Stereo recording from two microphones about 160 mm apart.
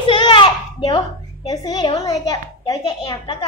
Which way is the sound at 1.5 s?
25° left (ahead or behind).